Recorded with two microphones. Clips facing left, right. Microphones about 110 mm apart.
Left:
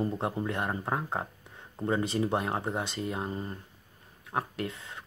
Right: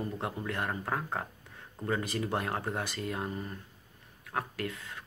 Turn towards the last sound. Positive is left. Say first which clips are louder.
# left 1 dB
turn(degrees=25)  # may be behind; listen again after turning